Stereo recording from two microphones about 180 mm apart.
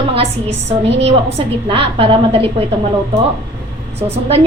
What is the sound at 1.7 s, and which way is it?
Speech, 30° right (ahead or behind).